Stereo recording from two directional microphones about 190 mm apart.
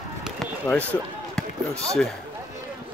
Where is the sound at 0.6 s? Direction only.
10° left (ahead or behind).